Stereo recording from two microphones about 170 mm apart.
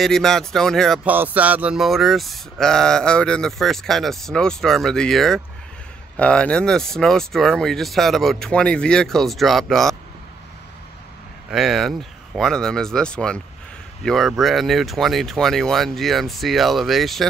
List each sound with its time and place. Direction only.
0.0 s speech: centre (ahead or behind)
1.0 s speech: 10° right (ahead or behind)
11.5 s speech: centre (ahead or behind)